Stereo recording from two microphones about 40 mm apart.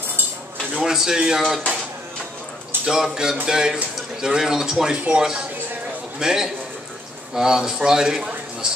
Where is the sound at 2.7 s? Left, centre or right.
Right.